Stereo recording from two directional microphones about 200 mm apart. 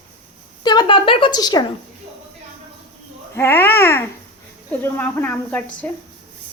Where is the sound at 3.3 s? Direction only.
10° left (ahead or behind).